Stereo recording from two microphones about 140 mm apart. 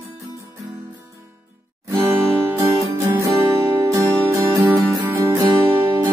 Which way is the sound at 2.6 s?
20° right (ahead or behind).